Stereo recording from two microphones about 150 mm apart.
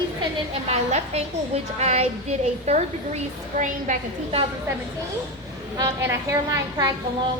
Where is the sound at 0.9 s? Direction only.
45° right (ahead or behind).